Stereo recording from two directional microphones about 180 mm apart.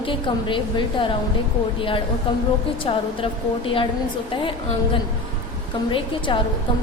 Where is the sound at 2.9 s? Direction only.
30° left (ahead or behind).